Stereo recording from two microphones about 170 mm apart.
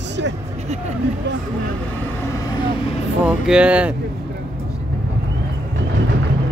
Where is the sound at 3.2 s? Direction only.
5° right (ahead or behind).